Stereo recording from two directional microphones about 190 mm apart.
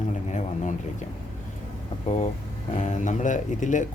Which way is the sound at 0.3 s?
40° left (ahead or behind).